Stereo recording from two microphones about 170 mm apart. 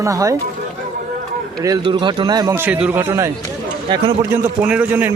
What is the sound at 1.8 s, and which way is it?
Speech, 25° right (ahead or behind).